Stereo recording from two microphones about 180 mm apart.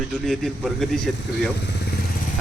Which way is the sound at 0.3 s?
Centre (ahead or behind).